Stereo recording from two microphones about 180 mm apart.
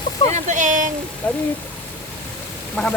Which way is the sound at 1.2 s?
5° left (ahead or behind).